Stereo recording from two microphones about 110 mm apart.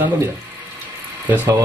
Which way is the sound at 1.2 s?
15° right (ahead or behind).